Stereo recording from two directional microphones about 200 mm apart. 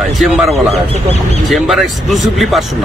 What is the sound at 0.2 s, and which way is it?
Speech, centre (ahead or behind).